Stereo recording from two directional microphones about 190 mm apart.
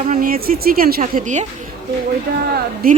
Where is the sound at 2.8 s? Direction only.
50° right (ahead or behind).